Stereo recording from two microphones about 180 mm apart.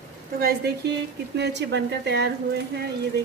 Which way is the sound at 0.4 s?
60° right (ahead or behind).